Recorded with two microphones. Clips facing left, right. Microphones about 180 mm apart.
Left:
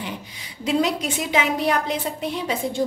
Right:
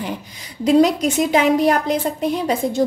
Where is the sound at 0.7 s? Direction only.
40° right (ahead or behind).